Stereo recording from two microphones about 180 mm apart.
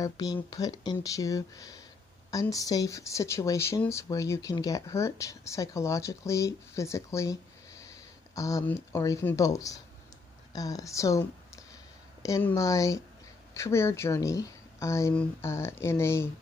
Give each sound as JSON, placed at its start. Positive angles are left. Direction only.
{"t": 0.0, "sound": "speech", "side_deg": 20}